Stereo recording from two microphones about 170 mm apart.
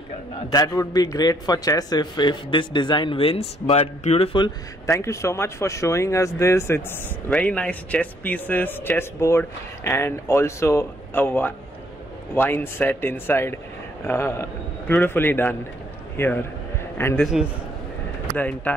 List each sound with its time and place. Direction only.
0.5 s a man's voice: 20° left (ahead or behind)
4.8 s a man's voice: 15° left (ahead or behind)
18.3 s a man's voice: 10° left (ahead or behind)